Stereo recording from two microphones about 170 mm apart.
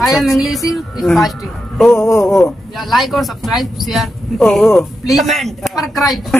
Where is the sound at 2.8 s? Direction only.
Centre (ahead or behind).